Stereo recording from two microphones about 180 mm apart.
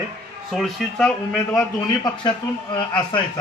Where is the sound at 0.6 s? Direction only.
Centre (ahead or behind).